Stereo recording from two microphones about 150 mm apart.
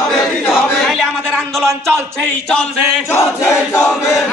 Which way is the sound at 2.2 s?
10° left (ahead or behind).